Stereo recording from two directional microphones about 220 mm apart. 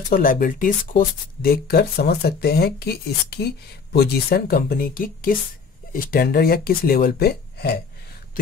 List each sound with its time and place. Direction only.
0.1 s speech: 40° left (ahead or behind)